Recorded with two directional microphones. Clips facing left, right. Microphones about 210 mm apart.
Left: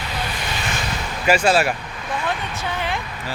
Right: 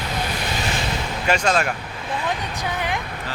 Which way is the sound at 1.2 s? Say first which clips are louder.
Left 4 dB; 5° left (ahead or behind).